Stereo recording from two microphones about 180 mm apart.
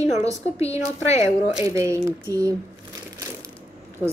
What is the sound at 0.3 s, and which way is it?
A woman's voice, 15° right (ahead or behind).